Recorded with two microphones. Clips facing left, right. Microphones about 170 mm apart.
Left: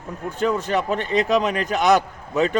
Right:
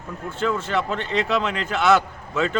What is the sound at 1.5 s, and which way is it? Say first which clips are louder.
Speech: left 4 dB; 40° left (ahead or behind).